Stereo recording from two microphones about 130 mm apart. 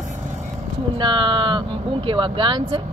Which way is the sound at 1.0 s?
35° right (ahead or behind).